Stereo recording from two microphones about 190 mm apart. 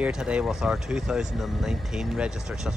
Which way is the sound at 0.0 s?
5° right (ahead or behind).